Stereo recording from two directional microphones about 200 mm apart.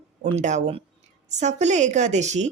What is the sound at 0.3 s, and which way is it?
Speech, 35° right (ahead or behind).